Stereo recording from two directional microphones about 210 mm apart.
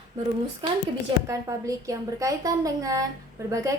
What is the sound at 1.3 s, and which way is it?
A woman's voice, 15° right (ahead or behind).